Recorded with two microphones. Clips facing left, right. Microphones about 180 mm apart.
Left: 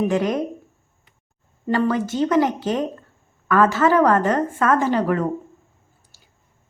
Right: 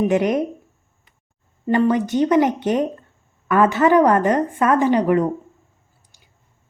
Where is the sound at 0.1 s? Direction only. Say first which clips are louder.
Right 3 dB; 20° right (ahead or behind).